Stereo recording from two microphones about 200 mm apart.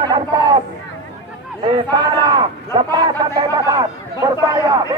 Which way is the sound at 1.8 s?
20° right (ahead or behind).